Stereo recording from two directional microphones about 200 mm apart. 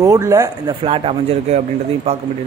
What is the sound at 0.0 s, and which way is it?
Speech, 15° right (ahead or behind).